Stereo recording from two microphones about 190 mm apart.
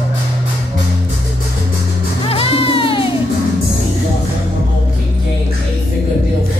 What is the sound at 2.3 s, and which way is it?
Music, 30° left (ahead or behind).